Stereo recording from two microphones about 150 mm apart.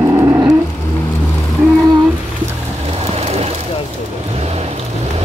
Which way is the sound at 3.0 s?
45° right (ahead or behind).